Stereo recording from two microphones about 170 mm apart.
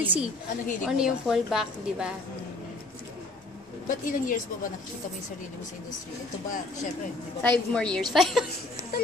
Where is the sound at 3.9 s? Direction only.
50° left (ahead or behind).